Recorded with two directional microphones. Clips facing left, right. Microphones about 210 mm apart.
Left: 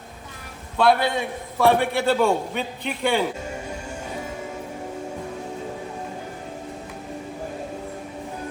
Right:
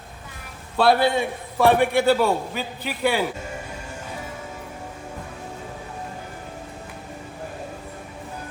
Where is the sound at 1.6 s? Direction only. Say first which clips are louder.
Right 2 dB; 15° right (ahead or behind).